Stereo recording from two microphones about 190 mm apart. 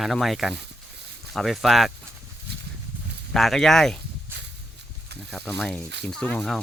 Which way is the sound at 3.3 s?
Centre (ahead or behind).